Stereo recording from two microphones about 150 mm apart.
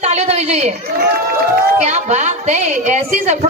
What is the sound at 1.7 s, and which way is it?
A woman's voice, 50° right (ahead or behind).